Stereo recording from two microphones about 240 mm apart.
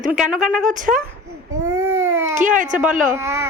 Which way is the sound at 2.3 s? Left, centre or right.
Right.